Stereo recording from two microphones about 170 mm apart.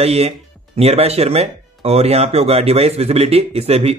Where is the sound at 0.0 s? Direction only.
40° right (ahead or behind).